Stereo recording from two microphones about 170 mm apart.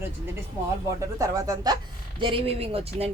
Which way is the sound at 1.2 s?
20° right (ahead or behind).